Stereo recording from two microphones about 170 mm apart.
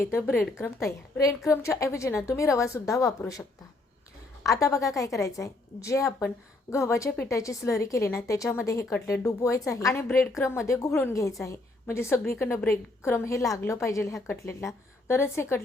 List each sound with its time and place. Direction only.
0.0 s a woman's voice: 15° left (ahead or behind)
4.4 s a woman's voice: 20° left (ahead or behind)